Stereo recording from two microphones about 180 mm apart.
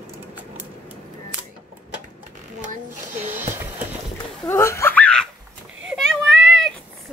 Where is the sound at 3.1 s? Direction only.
10° right (ahead or behind).